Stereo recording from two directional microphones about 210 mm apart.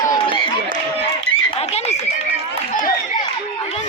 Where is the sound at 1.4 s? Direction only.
30° left (ahead or behind).